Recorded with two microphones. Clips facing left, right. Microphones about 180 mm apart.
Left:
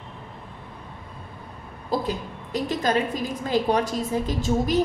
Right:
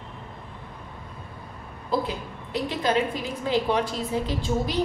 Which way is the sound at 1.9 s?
45° left (ahead or behind).